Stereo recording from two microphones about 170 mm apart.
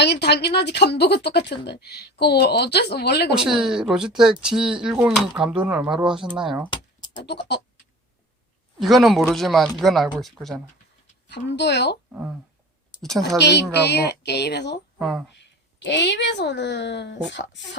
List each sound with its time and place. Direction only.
0.0 s a woman's voice: 80° left
3.3 s speech: 5° right (ahead or behind)
6.7 s keys jangling: 25° left (ahead or behind)
7.2 s a woman's voice: 75° left (ahead or behind)
8.8 s speech: centre (ahead or behind)
11.3 s speech: 90° left
12.1 s speech: 10° right (ahead or behind)
13.0 s speech: centre (ahead or behind)
13.4 s speech: 80° left
14.9 s speech: 5° right (ahead or behind)
15.8 s speech: 90° left